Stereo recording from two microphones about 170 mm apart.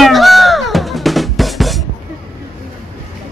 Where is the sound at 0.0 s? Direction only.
Centre (ahead or behind).